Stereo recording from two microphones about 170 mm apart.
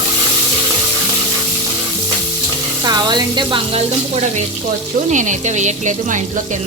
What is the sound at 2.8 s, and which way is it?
Speech, 25° right (ahead or behind).